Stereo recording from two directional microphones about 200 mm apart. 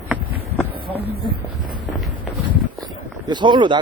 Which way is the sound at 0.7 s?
25° right (ahead or behind).